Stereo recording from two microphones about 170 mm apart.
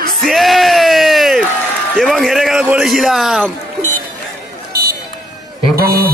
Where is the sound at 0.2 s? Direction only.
Centre (ahead or behind).